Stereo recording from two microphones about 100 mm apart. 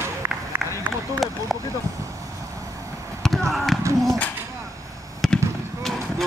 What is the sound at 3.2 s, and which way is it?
Basketball bounce, centre (ahead or behind).